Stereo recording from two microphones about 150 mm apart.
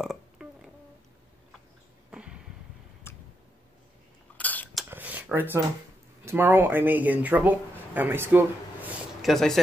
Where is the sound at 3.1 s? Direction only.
15° left (ahead or behind).